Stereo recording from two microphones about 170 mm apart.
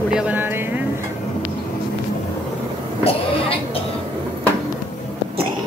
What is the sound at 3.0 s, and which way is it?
Speech, 35° left (ahead or behind).